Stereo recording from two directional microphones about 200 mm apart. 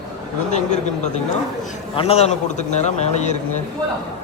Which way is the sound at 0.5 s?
35° left (ahead or behind).